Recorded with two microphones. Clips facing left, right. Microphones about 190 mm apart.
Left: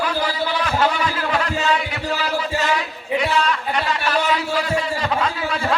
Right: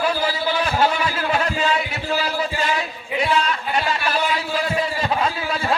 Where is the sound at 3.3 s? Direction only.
25° right (ahead or behind).